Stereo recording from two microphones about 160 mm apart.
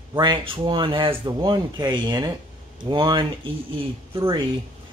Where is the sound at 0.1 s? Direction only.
30° right (ahead or behind).